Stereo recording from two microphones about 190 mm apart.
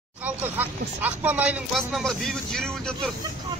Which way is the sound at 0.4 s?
10° right (ahead or behind).